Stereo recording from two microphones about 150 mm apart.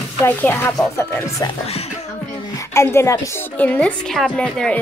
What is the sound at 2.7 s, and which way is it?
A woman's voice, 20° left (ahead or behind).